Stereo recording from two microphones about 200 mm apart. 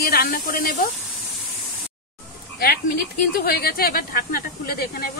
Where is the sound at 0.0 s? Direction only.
50° left (ahead or behind).